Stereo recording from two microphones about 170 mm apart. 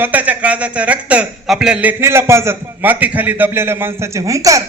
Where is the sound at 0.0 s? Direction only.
10° right (ahead or behind).